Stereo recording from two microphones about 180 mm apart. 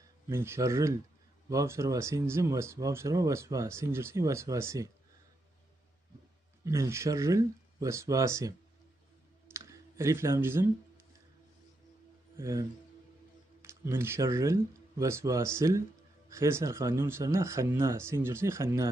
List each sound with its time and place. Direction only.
0.3 s speech: 15° right (ahead or behind)
6.6 s speech: 15° right (ahead or behind)
9.5 s clicking: 15° right (ahead or behind)
12.4 s speech: 15° right (ahead or behind)